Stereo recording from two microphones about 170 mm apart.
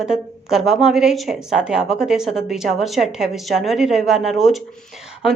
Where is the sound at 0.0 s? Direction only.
5° right (ahead or behind).